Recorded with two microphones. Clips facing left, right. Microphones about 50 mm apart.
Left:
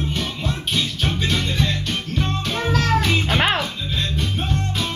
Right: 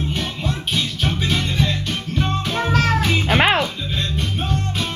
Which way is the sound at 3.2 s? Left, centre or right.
Right.